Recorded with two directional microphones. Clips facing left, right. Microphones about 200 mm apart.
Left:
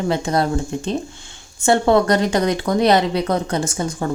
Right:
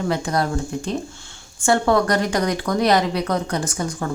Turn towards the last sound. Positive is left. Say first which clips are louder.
# left 3 dB
turn(degrees=25)  # may be behind; listen again after turning